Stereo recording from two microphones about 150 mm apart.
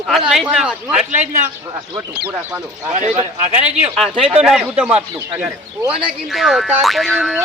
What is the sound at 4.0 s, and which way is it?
Speech, centre (ahead or behind).